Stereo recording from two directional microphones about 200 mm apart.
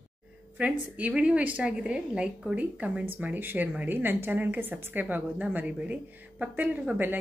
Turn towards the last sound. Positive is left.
turn(degrees=-10)  # may be behind; listen again after turning